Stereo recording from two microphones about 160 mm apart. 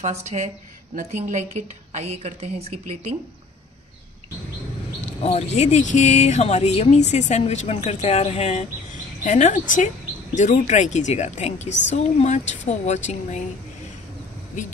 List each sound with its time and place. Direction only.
0.0 s a woman's voice: 45° right (ahead or behind)
5.0 s speech: 45° left (ahead or behind)